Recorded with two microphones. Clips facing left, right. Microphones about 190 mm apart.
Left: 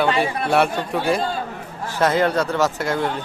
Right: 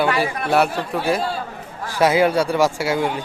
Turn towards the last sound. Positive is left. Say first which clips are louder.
# right 2 dB
turn(degrees=-10)  # may be behind; listen again after turning